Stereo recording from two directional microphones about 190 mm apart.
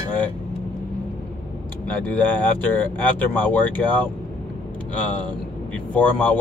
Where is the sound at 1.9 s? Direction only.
10° left (ahead or behind).